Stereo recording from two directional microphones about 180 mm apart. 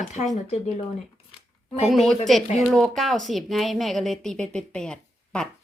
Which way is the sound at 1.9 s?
Centre (ahead or behind).